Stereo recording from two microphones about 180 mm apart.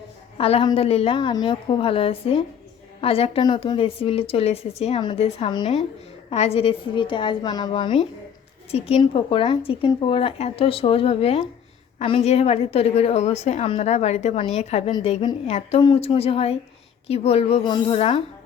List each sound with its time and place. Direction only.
0.3 s a woman's voice: 35° left (ahead or behind)